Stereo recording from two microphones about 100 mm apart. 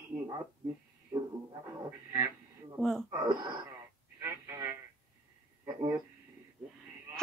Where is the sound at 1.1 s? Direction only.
45° right (ahead or behind).